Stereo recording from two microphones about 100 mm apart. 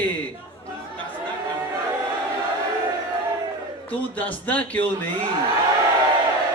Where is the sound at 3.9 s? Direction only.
15° left (ahead or behind).